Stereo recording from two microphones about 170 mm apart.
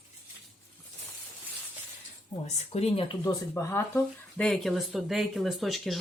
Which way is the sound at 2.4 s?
40° left (ahead or behind).